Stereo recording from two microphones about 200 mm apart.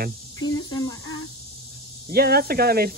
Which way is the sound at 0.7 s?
20° left (ahead or behind).